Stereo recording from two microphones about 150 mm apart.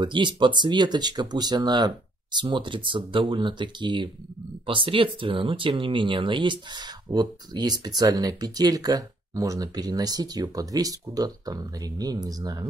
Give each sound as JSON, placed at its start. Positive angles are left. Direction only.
{"t": 0.0, "sound": "speech", "side_deg": -30}